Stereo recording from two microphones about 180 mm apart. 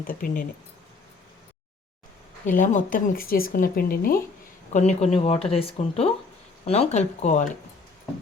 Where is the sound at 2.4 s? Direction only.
45° left (ahead or behind).